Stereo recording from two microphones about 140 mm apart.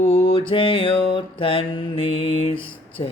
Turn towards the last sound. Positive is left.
turn(degrees=40)  # may be behind; listen again after turning